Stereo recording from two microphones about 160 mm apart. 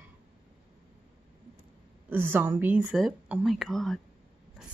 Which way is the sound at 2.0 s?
15° right (ahead or behind).